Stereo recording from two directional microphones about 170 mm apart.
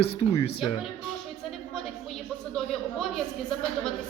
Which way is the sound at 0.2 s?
40° left (ahead or behind).